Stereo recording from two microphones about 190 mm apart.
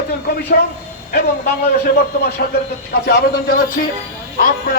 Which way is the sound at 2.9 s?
55° left (ahead or behind).